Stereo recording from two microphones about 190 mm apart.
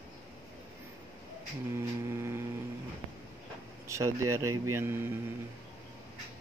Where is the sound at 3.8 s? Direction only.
15° right (ahead or behind).